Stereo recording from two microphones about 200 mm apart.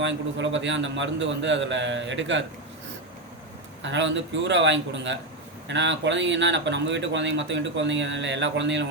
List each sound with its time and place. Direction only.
0.0 s speech: 65° right (ahead or behind)
3.8 s speech: 65° right (ahead or behind)